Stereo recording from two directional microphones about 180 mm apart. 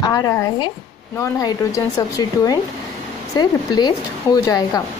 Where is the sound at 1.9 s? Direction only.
20° left (ahead or behind).